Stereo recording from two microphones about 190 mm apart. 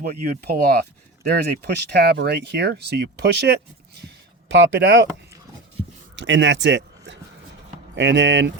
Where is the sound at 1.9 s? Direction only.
60° right (ahead or behind).